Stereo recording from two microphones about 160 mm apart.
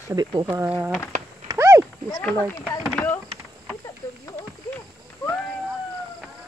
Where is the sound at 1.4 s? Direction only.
20° right (ahead or behind).